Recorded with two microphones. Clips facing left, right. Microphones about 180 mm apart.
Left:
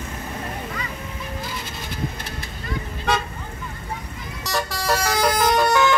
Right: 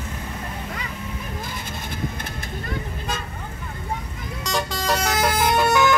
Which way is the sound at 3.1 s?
75° left (ahead or behind).